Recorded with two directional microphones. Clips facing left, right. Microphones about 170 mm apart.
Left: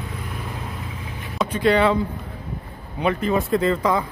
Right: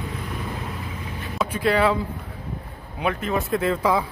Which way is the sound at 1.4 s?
5° right (ahead or behind).